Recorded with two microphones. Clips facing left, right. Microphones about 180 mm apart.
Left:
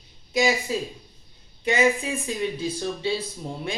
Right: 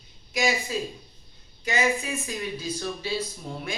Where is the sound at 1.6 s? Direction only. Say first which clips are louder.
Left 4 dB; 30° left (ahead or behind).